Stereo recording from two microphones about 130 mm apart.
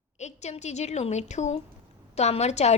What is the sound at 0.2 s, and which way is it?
A woman's voice, 60° left (ahead or behind).